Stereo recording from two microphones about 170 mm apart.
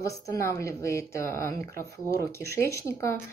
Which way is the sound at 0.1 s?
20° left (ahead or behind).